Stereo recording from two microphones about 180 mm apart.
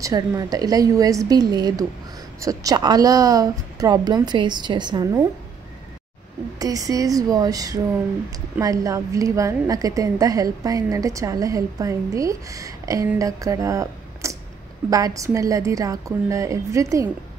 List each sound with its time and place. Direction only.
0.0 s a woman's voice: 20° right (ahead or behind)
6.6 s a woman's voice: 20° right (ahead or behind)